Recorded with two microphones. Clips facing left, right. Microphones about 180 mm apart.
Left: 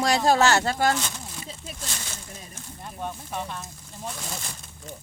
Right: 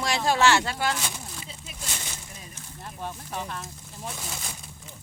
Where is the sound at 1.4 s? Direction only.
40° left (ahead or behind).